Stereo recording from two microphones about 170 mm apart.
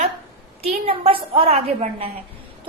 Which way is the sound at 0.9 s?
35° right (ahead or behind).